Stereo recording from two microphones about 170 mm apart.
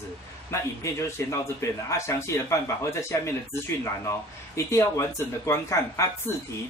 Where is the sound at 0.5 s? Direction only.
15° left (ahead or behind).